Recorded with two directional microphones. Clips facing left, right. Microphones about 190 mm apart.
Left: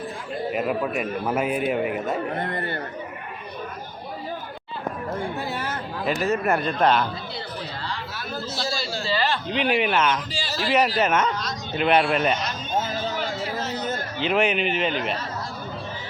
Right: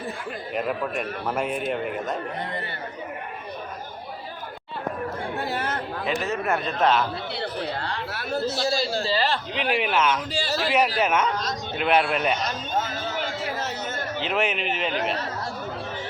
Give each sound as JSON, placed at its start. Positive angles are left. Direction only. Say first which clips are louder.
{"t": 0.5, "sound": "speech", "louder": "left 1 dB", "side_deg": 5}
{"t": 2.4, "sound": "speech", "louder": "left 4 dB", "side_deg": 55}
{"t": 5.4, "sound": "speech", "louder": "right 1 dB", "side_deg": -55}
{"t": 6.1, "sound": "speech", "louder": "left 4 dB", "side_deg": 0}
{"t": 7.3, "sound": "chatter", "louder": "right 4 dB", "side_deg": -65}
{"t": 8.5, "sound": "a man's voice", "louder": "right 4 dB", "side_deg": -40}
{"t": 9.5, "sound": "speech", "louder": "left 3 dB", "side_deg": 0}
{"t": 14.2, "sound": "speech", "louder": "left 4 dB", "side_deg": 0}